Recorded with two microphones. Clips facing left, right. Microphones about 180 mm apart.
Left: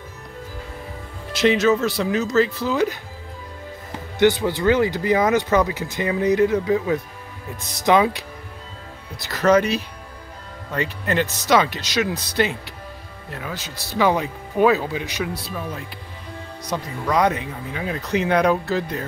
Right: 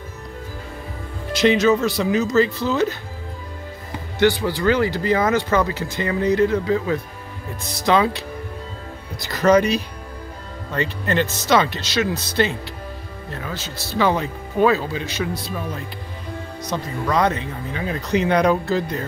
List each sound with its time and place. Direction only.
1.3 s speech: centre (ahead or behind)
4.2 s speech: 20° left (ahead or behind)
9.2 s speech: 5° left (ahead or behind)